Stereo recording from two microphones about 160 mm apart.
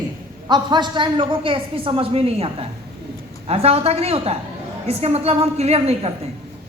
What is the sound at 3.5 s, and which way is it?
A man's voice, 40° right (ahead or behind).